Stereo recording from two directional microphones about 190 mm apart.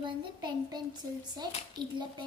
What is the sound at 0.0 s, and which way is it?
A child's voice, 25° right (ahead or behind).